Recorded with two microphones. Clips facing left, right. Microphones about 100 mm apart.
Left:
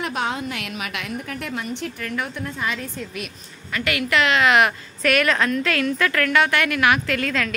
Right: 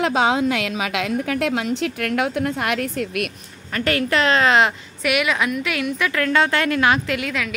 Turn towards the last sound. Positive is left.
turn(degrees=-15)  # may be behind; listen again after turning